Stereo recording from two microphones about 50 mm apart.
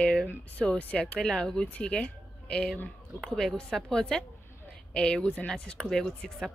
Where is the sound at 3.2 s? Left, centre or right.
Centre.